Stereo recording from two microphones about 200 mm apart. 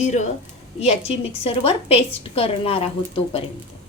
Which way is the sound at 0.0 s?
35° left (ahead or behind).